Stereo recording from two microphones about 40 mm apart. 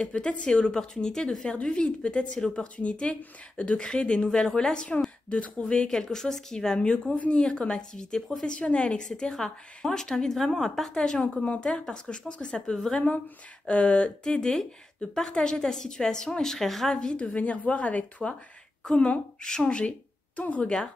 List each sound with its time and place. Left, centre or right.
0.0 s a woman's voice: left
5.3 s a woman's voice: left
5.8 s a woman's voice: centre
8.5 s a woman's voice: left; by 10.9 s centre
10.9 s a woman's voice: left
12.7 s a woman's voice: centre
13.7 s a woman's voice: left; by 16.9 s centre
16.9 s a woman's voice: left
19.6 s speech: left
20.6 s a woman's voice: left